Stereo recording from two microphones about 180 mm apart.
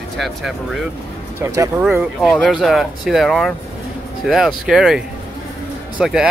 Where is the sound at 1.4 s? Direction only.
15° right (ahead or behind).